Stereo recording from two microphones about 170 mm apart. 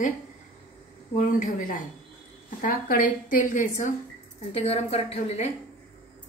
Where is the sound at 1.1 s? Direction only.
45° left (ahead or behind).